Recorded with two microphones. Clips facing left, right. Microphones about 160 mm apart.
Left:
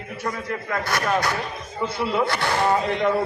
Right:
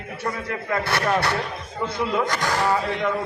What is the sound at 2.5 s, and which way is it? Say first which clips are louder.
Speech: left 2 dB; 10° left (ahead or behind).